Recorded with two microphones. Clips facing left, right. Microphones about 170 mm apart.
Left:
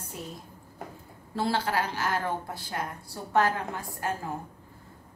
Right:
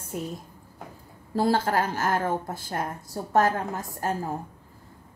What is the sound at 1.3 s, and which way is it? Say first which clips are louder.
A woman's voice: right 5 dB; 45° right (ahead or behind).